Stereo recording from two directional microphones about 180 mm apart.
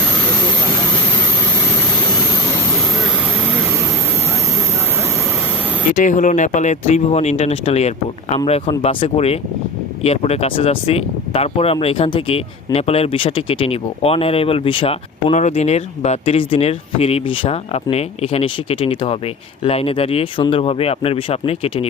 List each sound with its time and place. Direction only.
5.9 s speech: 45° left (ahead or behind)